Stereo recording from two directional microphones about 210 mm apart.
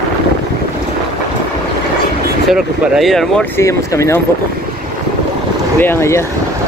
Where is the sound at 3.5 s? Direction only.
15° left (ahead or behind).